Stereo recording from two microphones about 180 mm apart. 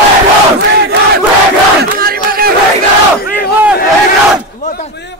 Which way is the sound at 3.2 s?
50° left (ahead or behind).